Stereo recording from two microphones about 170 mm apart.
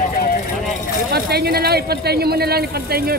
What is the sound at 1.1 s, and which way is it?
Speech, 65° right (ahead or behind).